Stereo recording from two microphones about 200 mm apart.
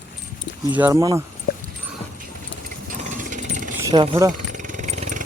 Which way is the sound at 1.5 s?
45° left (ahead or behind).